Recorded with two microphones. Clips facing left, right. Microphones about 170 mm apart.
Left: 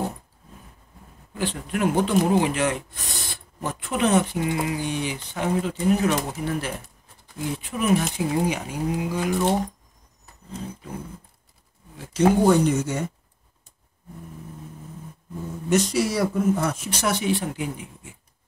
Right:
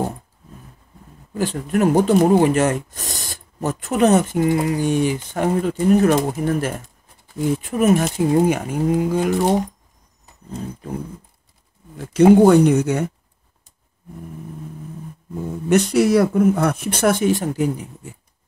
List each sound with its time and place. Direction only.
1.3 s speech: 40° right (ahead or behind)
12.0 s speech: 55° right (ahead or behind)
15.7 s speech: 60° right (ahead or behind); by 18.1 s 40° right (ahead or behind)